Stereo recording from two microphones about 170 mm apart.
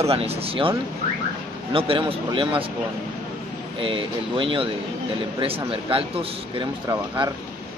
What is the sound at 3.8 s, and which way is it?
Speech, 30° right (ahead or behind).